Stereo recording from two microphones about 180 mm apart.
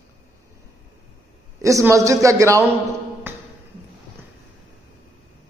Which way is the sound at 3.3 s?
10° right (ahead or behind).